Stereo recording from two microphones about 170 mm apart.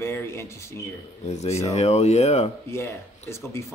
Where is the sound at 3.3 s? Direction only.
15° left (ahead or behind).